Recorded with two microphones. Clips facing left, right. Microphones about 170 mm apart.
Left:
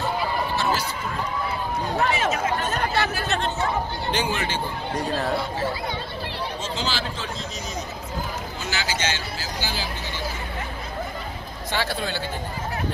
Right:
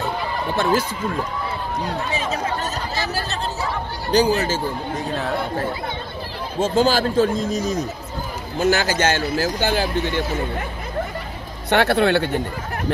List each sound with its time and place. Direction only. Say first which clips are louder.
0.6 s speech: right 6 dB; 55° right (ahead or behind)
2.2 s speech: even; 35° right (ahead or behind)
2.7 s speech: left 2 dB; 60° left (ahead or behind)
4.1 s speech: right 10 dB; 40° right (ahead or behind)
4.9 s speech: even; centre (ahead or behind)
6.6 s speech: right 15 dB; 50° right (ahead or behind)
11.7 s speech: right 11 dB; 65° right (ahead or behind)